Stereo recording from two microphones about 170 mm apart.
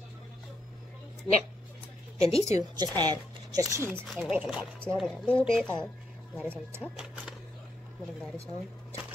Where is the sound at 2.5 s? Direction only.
20° right (ahead or behind).